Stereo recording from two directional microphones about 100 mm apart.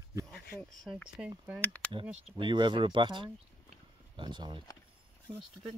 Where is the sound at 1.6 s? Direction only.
15° left (ahead or behind).